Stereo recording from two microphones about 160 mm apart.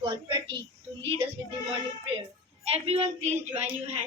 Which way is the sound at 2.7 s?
40° right (ahead or behind).